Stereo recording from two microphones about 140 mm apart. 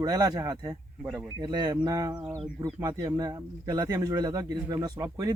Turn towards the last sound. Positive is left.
turn(degrees=-20)  # may be behind; listen again after turning